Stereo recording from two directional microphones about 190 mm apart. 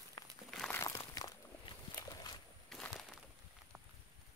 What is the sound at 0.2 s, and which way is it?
Crumpling, 15° left (ahead or behind).